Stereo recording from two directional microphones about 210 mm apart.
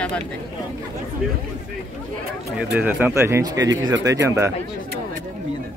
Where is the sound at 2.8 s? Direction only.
10° right (ahead or behind).